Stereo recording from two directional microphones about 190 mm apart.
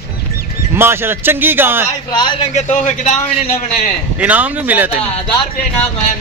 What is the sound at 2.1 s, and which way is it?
Speech, 20° left (ahead or behind).